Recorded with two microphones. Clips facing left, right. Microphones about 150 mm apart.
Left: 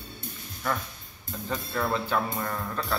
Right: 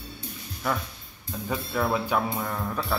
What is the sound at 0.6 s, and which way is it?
Speech, 10° right (ahead or behind).